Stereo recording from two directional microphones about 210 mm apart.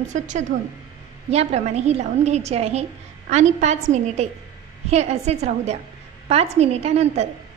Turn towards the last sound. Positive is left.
turn(degrees=-30)  # may be behind; listen again after turning